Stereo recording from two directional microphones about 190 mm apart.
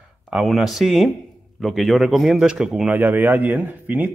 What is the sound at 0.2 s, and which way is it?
A man's voice, centre (ahead or behind).